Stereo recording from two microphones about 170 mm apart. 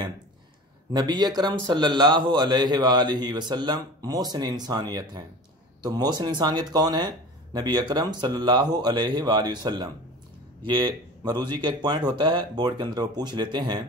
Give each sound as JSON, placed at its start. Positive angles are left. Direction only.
{"t": 0.9, "sound": "speech", "side_deg": -25}